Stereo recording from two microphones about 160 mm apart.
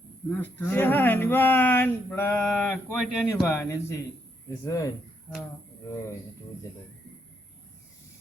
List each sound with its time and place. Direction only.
0.3 s speech: 10° left (ahead or behind)
2.4 s speech: centre (ahead or behind)
3.4 s speech: 20° left (ahead or behind)